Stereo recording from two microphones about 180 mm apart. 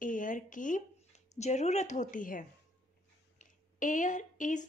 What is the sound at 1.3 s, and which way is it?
A woman's voice, 40° left (ahead or behind).